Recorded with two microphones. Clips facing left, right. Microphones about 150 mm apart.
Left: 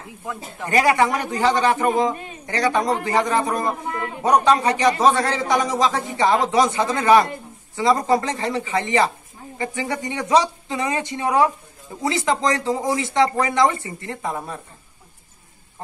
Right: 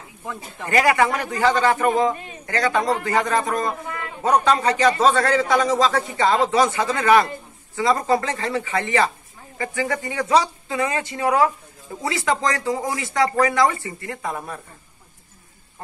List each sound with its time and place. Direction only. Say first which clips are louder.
0.7 s speech: even; 20° left (ahead or behind)